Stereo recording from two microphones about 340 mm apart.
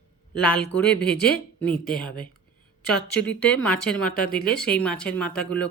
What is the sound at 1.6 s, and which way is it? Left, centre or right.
Speech, centre.